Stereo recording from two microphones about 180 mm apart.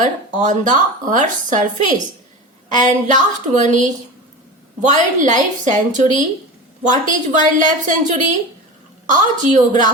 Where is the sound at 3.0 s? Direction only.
45° right (ahead or behind).